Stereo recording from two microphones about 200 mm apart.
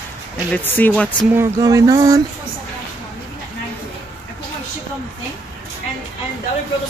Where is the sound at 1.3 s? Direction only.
15° right (ahead or behind).